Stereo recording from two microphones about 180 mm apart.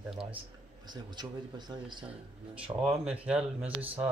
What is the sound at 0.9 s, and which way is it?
Speech, 25° right (ahead or behind).